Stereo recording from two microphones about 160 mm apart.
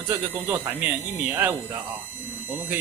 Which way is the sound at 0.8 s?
5° right (ahead or behind).